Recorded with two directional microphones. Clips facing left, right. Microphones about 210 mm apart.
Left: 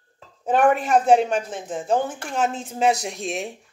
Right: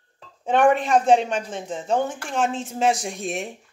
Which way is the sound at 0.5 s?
5° left (ahead or behind).